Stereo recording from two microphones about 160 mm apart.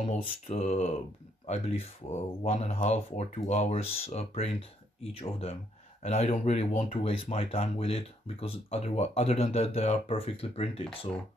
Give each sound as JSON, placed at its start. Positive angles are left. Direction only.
{"t": 0.0, "sound": "speech", "side_deg": 40}